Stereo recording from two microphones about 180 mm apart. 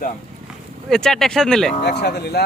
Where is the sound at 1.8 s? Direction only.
65° left (ahead or behind).